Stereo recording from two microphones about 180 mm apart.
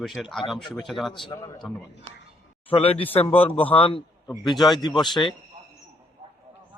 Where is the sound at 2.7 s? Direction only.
30° left (ahead or behind).